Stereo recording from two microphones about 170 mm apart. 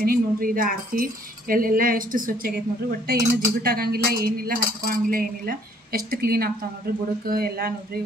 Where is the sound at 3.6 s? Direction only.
60° right (ahead or behind).